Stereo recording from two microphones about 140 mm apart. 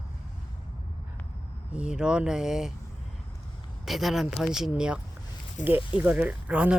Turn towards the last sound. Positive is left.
turn(degrees=-10)  # may be behind; listen again after turning